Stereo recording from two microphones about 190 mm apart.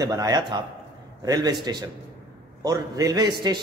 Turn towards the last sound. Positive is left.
turn(degrees=-20)  # may be behind; listen again after turning